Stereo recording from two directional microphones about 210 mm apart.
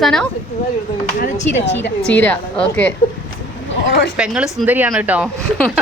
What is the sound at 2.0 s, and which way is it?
Speech, 5° left (ahead or behind).